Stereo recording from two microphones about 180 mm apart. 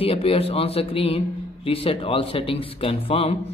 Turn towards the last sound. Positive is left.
turn(degrees=35)  # may be behind; listen again after turning